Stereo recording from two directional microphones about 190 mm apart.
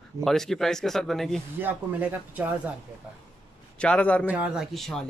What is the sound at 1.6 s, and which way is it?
Speech, 10° right (ahead or behind).